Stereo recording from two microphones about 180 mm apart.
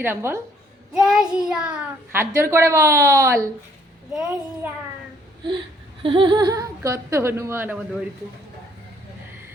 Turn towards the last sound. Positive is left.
turn(degrees=-10)  # may be behind; listen again after turning